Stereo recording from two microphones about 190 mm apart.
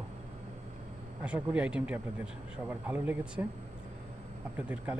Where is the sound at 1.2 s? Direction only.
5° right (ahead or behind).